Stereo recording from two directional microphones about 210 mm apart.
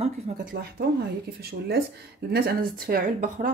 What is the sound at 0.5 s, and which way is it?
Speech, 45° right (ahead or behind).